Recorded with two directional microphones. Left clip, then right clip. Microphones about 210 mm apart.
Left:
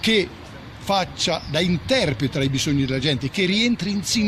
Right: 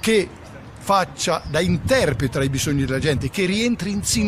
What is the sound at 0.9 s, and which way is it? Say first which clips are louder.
Speech: right 2 dB; 15° right (ahead or behind).